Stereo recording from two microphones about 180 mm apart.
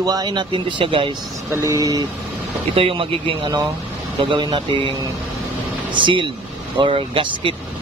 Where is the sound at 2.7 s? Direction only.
30° right (ahead or behind).